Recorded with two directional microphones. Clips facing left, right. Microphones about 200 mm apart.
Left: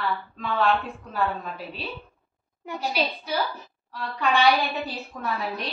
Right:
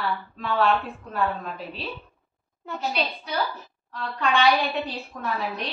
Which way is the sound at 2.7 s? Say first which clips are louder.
Left 1 dB; 5° left (ahead or behind).